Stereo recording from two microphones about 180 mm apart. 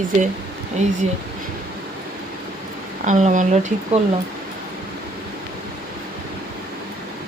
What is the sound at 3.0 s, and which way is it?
Speech, 45° right (ahead or behind).